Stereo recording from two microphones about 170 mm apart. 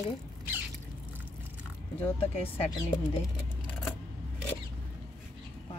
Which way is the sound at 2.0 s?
35° left (ahead or behind).